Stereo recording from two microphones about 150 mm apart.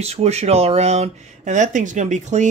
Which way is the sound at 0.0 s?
45° right (ahead or behind).